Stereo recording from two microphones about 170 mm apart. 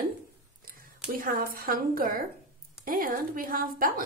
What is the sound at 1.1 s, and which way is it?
A woman's voice, 60° right (ahead or behind).